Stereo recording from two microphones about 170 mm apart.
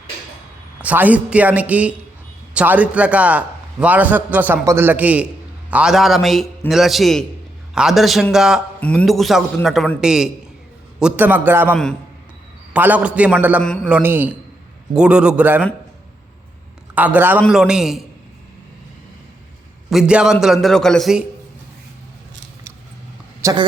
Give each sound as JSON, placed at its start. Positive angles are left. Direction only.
{"t": 0.8, "sound": "a man's voice", "side_deg": -10}
{"t": 11.7, "sound": "a man's voice", "side_deg": 5}
{"t": 12.7, "sound": "a man's voice", "side_deg": -10}
{"t": 16.9, "sound": "a man's voice", "side_deg": -10}
{"t": 19.9, "sound": "a man's voice", "side_deg": -5}
{"t": 23.4, "sound": "speech", "side_deg": -20}